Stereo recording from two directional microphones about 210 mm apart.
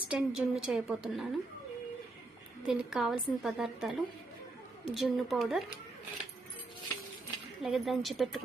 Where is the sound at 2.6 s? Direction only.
Centre (ahead or behind).